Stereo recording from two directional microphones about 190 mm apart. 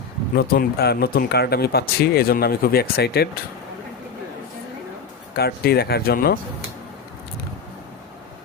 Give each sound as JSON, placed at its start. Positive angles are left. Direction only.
{"t": 0.3, "sound": "speech", "side_deg": 55}
{"t": 5.4, "sound": "speech", "side_deg": 55}